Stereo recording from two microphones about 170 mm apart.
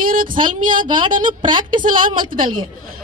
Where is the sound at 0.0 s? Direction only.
55° right (ahead or behind).